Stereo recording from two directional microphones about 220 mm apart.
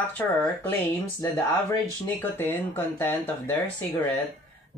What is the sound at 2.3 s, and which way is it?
Speech, 10° left (ahead or behind).